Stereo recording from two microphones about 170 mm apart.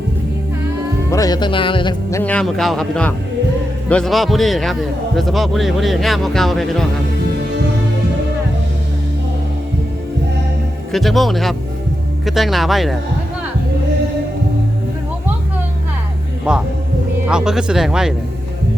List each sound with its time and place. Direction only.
1.1 s a man's voice: 20° left (ahead or behind); by 6.8 s centre (ahead or behind)
10.9 s a man's voice: centre (ahead or behind)
16.5 s a man's voice: 5° right (ahead or behind)